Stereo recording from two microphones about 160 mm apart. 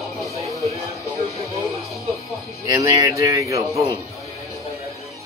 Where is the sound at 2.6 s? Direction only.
20° right (ahead or behind).